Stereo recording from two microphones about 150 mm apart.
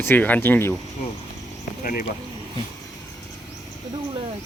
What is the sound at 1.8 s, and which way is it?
Speech, 70° left (ahead or behind).